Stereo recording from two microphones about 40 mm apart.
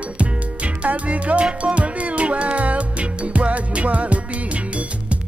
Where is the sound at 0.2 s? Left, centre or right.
Right.